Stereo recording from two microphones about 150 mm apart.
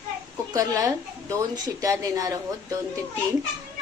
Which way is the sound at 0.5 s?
20° right (ahead or behind).